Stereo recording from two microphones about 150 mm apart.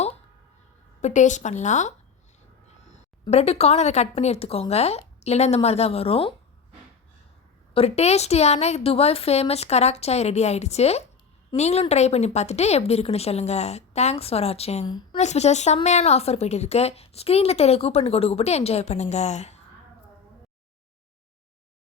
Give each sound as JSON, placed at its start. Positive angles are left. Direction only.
{"t": 1.0, "sound": "a woman's voice", "side_deg": 55}
{"t": 3.2, "sound": "a woman's voice", "side_deg": 45}
{"t": 7.7, "sound": "a woman's voice", "side_deg": 40}
{"t": 14.8, "sound": "a woman's voice", "side_deg": 30}
{"t": 15.2, "sound": "a woman's voice", "side_deg": 50}